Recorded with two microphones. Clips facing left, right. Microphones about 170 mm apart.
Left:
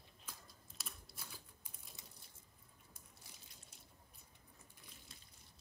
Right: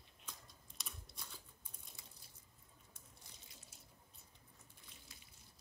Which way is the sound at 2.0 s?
20° left (ahead or behind).